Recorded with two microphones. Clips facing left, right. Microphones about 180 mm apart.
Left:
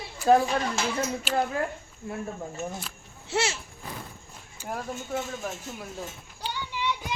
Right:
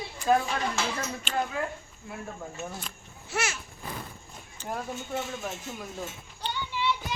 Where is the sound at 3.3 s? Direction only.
25° left (ahead or behind).